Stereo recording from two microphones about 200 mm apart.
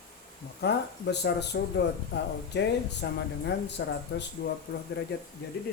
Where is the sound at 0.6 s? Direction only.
55° left (ahead or behind).